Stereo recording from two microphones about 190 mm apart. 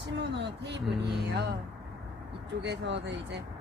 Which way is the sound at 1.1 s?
60° right (ahead or behind).